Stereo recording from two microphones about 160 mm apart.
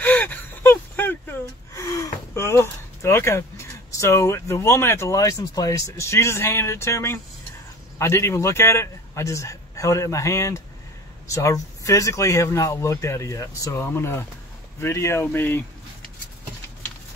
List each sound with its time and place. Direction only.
0.0 s gasp: 10° left (ahead or behind)
8.0 s a man's voice: 15° left (ahead or behind)